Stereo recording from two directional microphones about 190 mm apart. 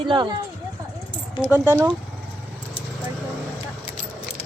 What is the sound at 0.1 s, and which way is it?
Speech, 25° right (ahead or behind).